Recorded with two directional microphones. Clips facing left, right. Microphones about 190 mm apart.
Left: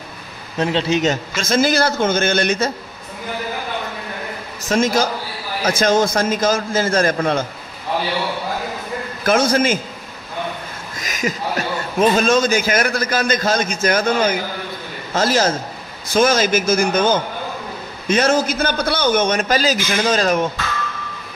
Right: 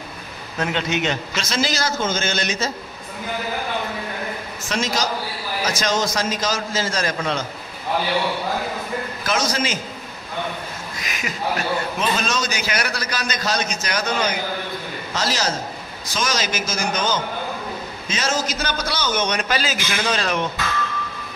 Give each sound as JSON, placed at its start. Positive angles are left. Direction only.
{"t": 0.6, "sound": "a man's voice", "side_deg": 30}
{"t": 4.6, "sound": "a man's voice", "side_deg": 50}
{"t": 9.2, "sound": "a man's voice", "side_deg": 55}
{"t": 11.0, "sound": "a man's voice", "side_deg": 40}